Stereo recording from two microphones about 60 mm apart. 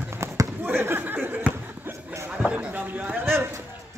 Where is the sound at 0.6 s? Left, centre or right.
Right.